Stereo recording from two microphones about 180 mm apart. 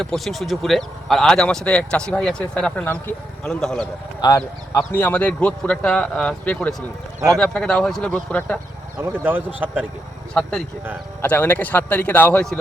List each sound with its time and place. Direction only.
0.0 s speech: centre (ahead or behind)
4.2 s a man's voice: 20° left (ahead or behind)
9.0 s speech: 15° right (ahead or behind)
11.2 s a man's voice: 10° left (ahead or behind)